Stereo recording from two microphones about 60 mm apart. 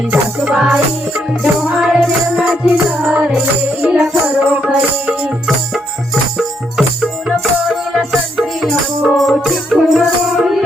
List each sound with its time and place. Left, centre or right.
0.3 s music: centre
2.6 s music: right
3.8 s music: centre
4.4 s music: right
6.3 s music: centre